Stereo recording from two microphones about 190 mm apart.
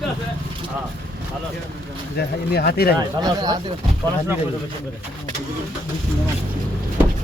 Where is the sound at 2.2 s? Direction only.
60° left (ahead or behind).